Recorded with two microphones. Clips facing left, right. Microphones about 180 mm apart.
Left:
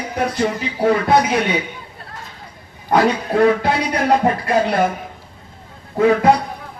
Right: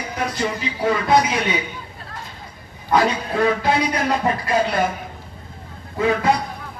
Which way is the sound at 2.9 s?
55° left (ahead or behind).